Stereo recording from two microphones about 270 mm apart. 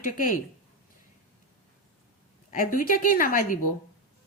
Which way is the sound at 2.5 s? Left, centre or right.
Left.